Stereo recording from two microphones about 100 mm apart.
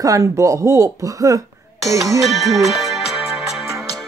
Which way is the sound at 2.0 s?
Centre (ahead or behind).